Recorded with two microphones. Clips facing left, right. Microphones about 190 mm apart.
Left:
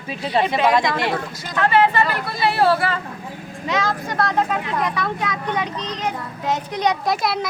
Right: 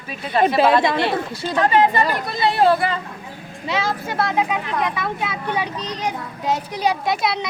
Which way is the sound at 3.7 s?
5° right (ahead or behind).